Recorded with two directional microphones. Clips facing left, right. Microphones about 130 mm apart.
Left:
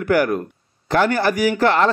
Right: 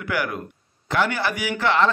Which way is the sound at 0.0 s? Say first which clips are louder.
Left 9 dB; 45° left (ahead or behind).